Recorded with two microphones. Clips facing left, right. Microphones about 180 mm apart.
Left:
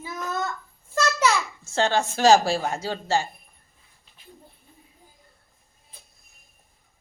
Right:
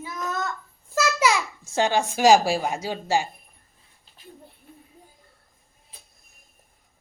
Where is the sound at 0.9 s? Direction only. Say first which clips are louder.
Right 1 dB; 10° right (ahead or behind).